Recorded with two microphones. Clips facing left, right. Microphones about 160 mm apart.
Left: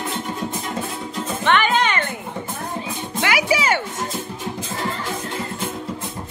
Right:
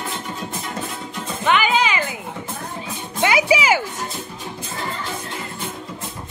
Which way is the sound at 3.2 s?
20° right (ahead or behind).